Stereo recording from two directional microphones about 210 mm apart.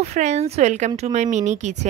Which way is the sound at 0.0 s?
35° right (ahead or behind).